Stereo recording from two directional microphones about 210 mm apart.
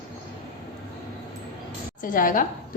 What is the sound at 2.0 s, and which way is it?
Speech, 40° left (ahead or behind).